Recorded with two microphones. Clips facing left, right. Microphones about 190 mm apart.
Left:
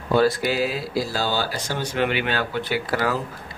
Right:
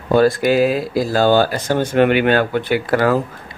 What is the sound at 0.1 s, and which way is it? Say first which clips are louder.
Speech: right 6 dB; 50° right (ahead or behind).